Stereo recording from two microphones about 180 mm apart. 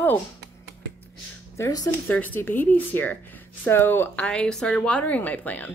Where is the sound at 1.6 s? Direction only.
20° left (ahead or behind).